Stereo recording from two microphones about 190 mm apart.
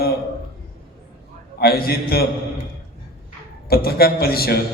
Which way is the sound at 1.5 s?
55° left (ahead or behind).